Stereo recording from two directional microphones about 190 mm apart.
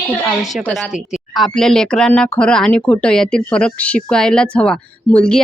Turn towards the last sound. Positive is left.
turn(degrees=5)  # may be behind; listen again after turning